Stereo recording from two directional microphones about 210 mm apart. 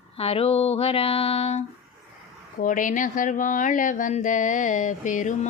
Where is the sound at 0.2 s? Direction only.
30° left (ahead or behind).